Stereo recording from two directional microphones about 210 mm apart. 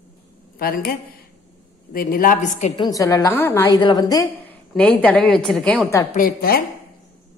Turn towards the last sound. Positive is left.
turn(degrees=45)  # may be behind; listen again after turning